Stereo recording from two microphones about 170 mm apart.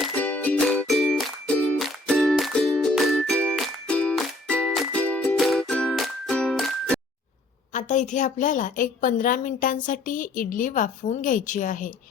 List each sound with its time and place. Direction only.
0.2 s music: 10° left (ahead or behind)
7.7 s a woman's voice: 45° left (ahead or behind)